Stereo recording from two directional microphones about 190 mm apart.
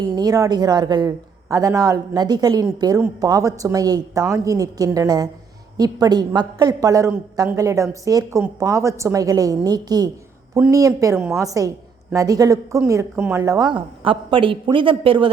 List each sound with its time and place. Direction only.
0.0 s a man's voice: 20° right (ahead or behind)